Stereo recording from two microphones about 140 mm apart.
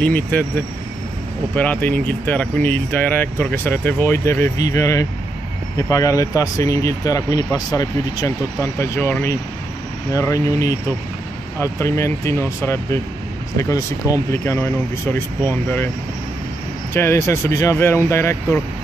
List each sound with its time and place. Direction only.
0.0 s speech: 10° left (ahead or behind)
1.5 s speech: 10° left (ahead or behind)
16.9 s speech: 20° left (ahead or behind)